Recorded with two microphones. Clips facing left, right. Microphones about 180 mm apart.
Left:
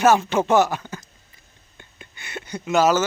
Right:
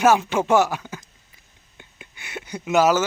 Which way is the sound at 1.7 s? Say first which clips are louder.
Even; 10° right (ahead or behind).